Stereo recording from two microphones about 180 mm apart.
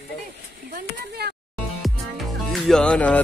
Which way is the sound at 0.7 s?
60° right (ahead or behind).